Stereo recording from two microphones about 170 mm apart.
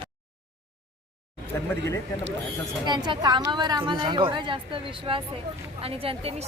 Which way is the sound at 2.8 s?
25° right (ahead or behind).